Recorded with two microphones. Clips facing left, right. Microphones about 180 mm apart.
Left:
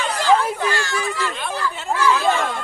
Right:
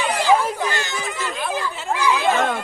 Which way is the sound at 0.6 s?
20° right (ahead or behind).